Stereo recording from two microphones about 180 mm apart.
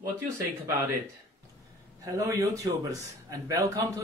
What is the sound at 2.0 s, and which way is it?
Speech, 20° right (ahead or behind).